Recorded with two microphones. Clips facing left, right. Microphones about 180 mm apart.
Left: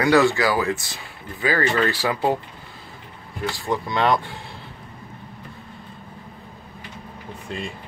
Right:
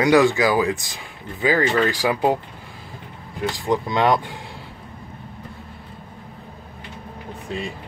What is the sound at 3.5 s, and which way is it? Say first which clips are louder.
Speech: right 3 dB; 15° right (ahead or behind).